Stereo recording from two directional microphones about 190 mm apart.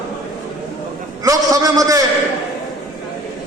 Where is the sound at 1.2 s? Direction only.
20° right (ahead or behind).